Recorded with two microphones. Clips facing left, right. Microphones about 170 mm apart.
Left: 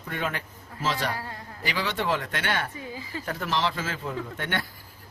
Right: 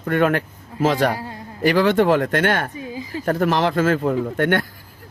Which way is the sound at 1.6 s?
50° right (ahead or behind).